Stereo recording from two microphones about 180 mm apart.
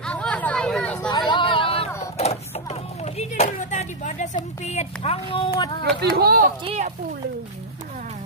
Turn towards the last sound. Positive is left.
turn(degrees=-35)  # may be behind; listen again after turning